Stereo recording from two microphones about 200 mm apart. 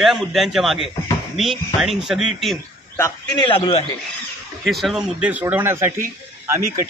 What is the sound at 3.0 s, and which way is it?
Speech, 10° left (ahead or behind).